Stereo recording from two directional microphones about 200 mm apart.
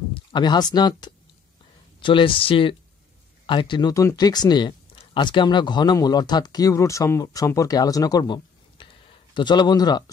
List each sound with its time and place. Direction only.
0.1 s speech: 20° left (ahead or behind)